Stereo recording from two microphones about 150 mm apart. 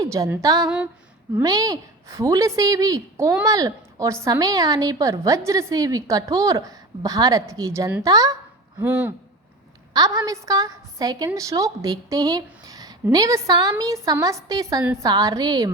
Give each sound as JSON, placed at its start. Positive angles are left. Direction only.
{"t": 0.0, "sound": "a woman's voice", "side_deg": -20}
{"t": 8.8, "sound": "speech", "side_deg": -15}
{"t": 9.9, "sound": "a woman's voice", "side_deg": -25}